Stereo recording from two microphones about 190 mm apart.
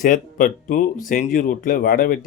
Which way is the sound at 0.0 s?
45° left (ahead or behind).